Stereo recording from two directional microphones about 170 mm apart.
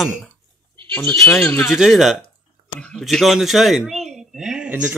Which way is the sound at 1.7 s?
Centre (ahead or behind).